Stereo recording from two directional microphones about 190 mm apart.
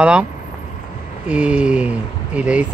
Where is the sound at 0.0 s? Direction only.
5° right (ahead or behind).